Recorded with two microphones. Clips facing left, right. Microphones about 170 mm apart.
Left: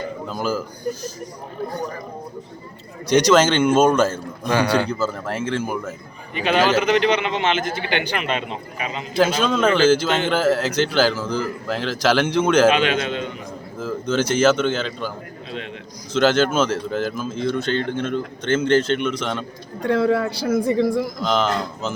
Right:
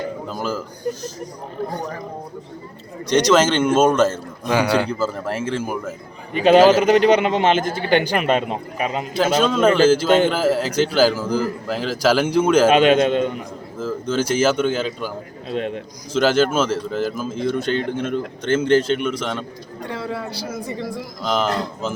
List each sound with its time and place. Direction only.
0.3 s a man's voice: centre (ahead or behind)
3.1 s a man's voice: centre (ahead or behind)
6.3 s a man's voice: 40° right (ahead or behind)
9.1 s a man's voice: 5° right (ahead or behind)
12.7 s a man's voice: 45° right (ahead or behind)
13.7 s a man's voice: 5° right (ahead or behind)
15.4 s a man's voice: 50° right (ahead or behind)
16.1 s a man's voice: 5° right (ahead or behind)
19.9 s a man's voice: 60° left (ahead or behind)
21.2 s a man's voice: 5° right (ahead or behind)